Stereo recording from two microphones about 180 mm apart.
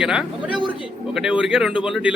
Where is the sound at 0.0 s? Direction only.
5° right (ahead or behind).